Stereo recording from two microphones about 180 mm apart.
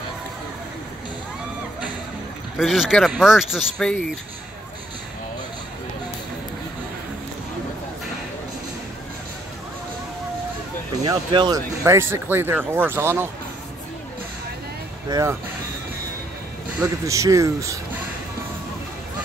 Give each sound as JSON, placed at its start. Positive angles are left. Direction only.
{"t": 2.5, "sound": "speech", "side_deg": 0}
{"t": 11.1, "sound": "speech", "side_deg": -25}
{"t": 15.0, "sound": "speech", "side_deg": -20}
{"t": 16.8, "sound": "speech", "side_deg": -15}